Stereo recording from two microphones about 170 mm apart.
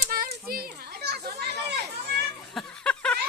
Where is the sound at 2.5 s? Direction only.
5° left (ahead or behind).